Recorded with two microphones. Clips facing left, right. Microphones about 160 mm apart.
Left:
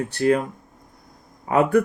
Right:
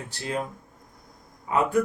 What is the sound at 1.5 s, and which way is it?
Speech, 65° left (ahead or behind).